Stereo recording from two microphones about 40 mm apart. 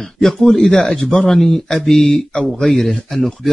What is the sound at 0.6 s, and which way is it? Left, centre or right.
Speech, centre.